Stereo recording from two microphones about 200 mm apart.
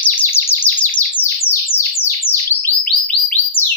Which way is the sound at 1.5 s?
10° left (ahead or behind).